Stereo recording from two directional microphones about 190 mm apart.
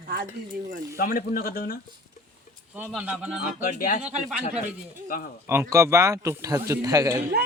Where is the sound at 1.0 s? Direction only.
50° left (ahead or behind).